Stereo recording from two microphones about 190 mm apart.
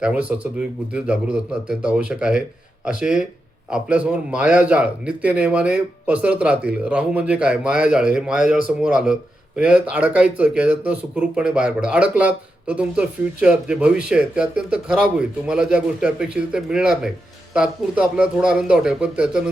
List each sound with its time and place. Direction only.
0.0 s speech: 5° right (ahead or behind)